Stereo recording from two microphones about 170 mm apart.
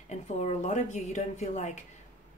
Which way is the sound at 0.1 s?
45° left (ahead or behind).